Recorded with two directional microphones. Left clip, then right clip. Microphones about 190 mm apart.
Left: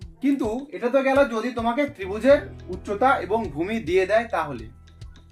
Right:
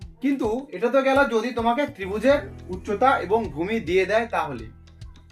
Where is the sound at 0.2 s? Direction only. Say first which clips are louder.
Even; 15° left (ahead or behind).